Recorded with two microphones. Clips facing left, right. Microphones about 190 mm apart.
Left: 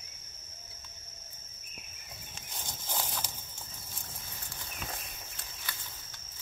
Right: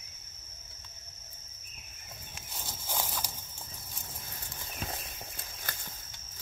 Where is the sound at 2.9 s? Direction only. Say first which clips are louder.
Right 1 dB; 10° right (ahead or behind).